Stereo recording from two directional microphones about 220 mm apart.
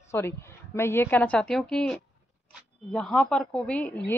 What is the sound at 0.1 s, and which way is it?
A woman's voice, 10° left (ahead or behind).